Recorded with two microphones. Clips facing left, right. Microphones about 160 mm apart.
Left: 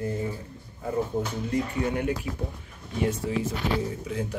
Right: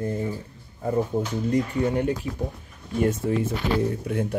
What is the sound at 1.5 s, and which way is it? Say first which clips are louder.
Speech: right 4 dB; 40° right (ahead or behind).